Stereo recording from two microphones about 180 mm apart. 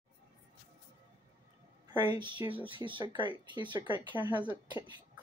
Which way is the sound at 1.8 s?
20° right (ahead or behind).